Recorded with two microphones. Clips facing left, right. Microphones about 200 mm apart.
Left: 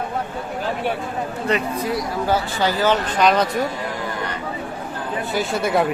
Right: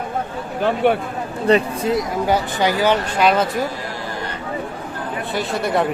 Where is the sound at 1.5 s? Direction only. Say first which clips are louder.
Right 6 dB; 30° right (ahead or behind); by 3.4 s 5° right (ahead or behind).